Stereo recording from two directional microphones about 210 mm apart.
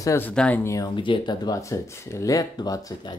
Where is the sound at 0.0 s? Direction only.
10° left (ahead or behind).